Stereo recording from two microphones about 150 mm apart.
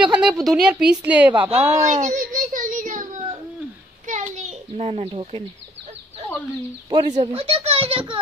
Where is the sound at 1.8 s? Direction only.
50° right (ahead or behind).